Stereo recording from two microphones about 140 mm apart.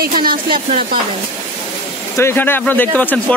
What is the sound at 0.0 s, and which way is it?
Speech, 90° right.